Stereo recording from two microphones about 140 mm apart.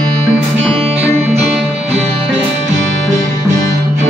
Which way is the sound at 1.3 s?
50° right (ahead or behind).